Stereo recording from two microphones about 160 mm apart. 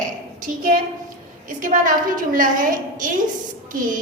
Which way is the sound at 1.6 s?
55° right (ahead or behind).